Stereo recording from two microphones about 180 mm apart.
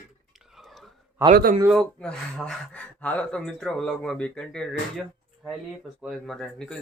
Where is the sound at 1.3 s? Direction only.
50° right (ahead or behind).